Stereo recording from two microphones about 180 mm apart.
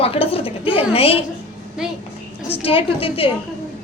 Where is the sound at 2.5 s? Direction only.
30° left (ahead or behind).